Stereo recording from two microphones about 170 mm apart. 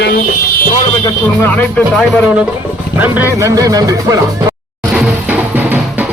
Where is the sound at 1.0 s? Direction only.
15° left (ahead or behind).